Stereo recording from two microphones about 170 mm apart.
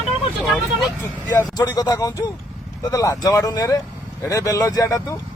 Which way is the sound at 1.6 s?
25° left (ahead or behind).